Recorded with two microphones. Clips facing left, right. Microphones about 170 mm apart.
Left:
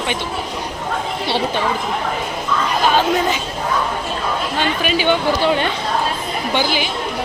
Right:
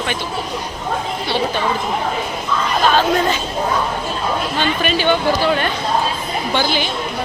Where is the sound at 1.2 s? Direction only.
30° left (ahead or behind).